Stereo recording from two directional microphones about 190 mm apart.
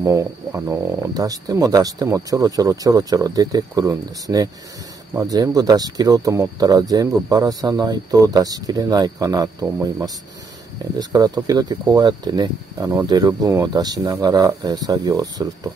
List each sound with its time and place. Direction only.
0.0 s speech: 15° right (ahead or behind)